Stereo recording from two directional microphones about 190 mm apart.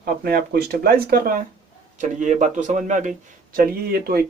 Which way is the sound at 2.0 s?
40° right (ahead or behind).